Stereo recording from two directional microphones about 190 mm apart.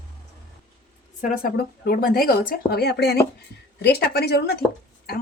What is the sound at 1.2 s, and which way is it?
A woman's voice, 50° left (ahead or behind).